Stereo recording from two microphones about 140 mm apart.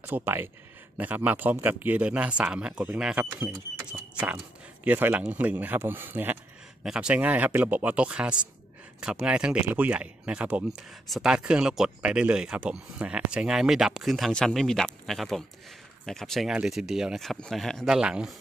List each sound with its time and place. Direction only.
0.0 s a man's voice: 15° right (ahead or behind)
4.8 s a man's voice: 15° right (ahead or behind)